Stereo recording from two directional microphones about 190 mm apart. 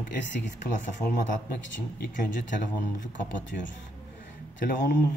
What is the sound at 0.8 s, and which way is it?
Speech, 45° left (ahead or behind).